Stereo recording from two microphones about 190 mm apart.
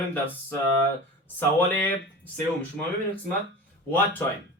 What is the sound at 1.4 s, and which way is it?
Speech, 10° left (ahead or behind).